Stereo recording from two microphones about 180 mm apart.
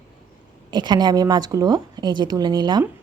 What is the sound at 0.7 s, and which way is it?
A woman's voice, 25° right (ahead or behind).